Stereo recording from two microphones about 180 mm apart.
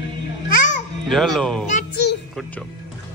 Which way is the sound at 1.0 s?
Centre (ahead or behind).